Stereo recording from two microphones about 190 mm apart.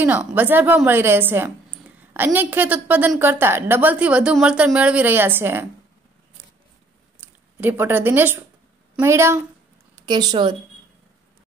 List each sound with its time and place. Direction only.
0.0 s a woman's voice: 10° right (ahead or behind)
7.6 s a woman's voice: 10° right (ahead or behind)